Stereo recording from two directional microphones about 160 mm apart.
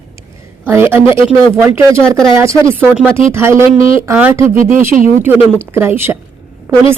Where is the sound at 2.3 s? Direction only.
15° right (ahead or behind).